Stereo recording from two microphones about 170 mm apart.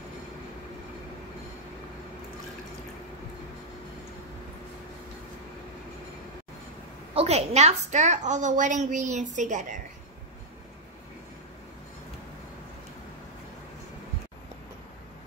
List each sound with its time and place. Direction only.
7.2 s a woman's voice: 40° right (ahead or behind)